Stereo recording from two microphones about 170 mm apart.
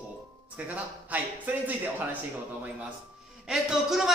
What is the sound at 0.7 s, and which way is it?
Speech, 10° right (ahead or behind).